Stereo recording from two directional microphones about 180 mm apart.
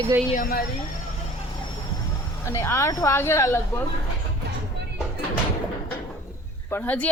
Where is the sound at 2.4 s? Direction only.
15° left (ahead or behind).